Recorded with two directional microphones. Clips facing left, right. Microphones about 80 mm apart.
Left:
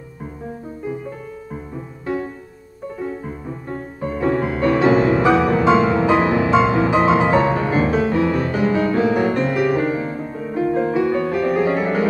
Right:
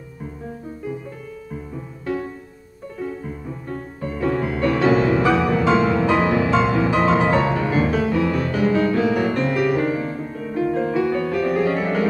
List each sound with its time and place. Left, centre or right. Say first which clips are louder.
3.0 s music: left 1 dB; left
6.9 s music: left 2 dB; left
7.4 s music: left 2 dB; left